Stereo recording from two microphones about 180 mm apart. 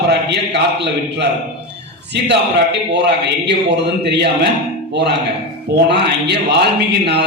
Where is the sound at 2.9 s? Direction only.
70° right (ahead or behind).